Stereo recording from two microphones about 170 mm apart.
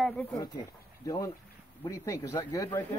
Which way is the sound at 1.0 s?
20° left (ahead or behind).